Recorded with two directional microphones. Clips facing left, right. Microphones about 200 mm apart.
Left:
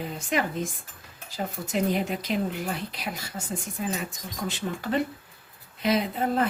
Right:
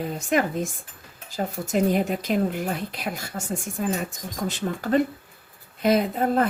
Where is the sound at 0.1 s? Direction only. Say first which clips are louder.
Right 4 dB; 45° right (ahead or behind).